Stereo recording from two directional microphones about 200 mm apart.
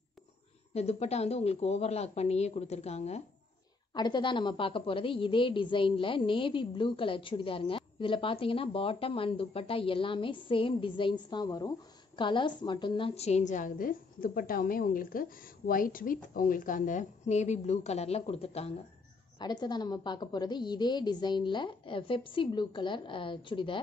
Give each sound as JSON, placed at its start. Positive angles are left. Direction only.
{"t": 0.7, "sound": "a woman's voice", "side_deg": 30}
{"t": 3.9, "sound": "a woman's voice", "side_deg": 20}